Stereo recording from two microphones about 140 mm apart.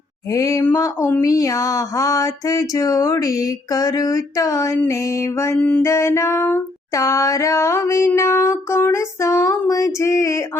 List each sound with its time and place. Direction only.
0.3 s female singing: 25° left (ahead or behind)
5.5 s music: 10° left (ahead or behind)
5.8 s female singing: 20° left (ahead or behind)